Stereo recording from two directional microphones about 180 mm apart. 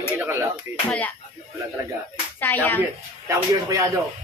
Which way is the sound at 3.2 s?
15° right (ahead or behind).